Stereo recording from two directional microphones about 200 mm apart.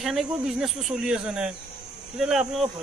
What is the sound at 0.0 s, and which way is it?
Speech, centre (ahead or behind).